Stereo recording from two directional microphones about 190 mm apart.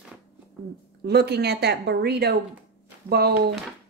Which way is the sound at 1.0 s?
55° right (ahead or behind).